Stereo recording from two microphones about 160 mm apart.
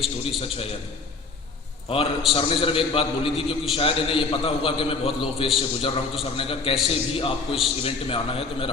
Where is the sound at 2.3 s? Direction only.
35° left (ahead or behind).